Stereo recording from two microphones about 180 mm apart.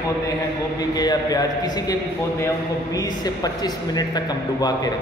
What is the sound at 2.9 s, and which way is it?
Speech, 20° left (ahead or behind).